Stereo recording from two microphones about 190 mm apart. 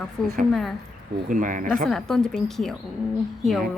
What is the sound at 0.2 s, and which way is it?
Speech, centre (ahead or behind).